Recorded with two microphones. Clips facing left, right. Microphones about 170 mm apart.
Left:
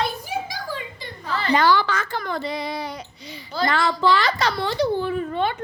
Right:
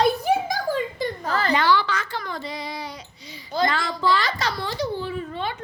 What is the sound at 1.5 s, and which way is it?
A child's voice, 45° left (ahead or behind).